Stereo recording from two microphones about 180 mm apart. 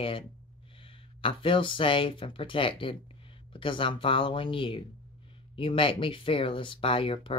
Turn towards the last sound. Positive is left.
turn(degrees=30)  # may be behind; listen again after turning